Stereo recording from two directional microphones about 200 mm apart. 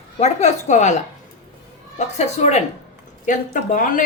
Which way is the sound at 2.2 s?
35° left (ahead or behind).